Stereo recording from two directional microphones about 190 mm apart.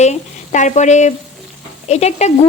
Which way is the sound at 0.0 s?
40° left (ahead or behind).